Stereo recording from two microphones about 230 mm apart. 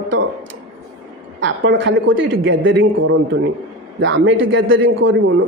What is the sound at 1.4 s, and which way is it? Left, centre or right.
A man's voice, right.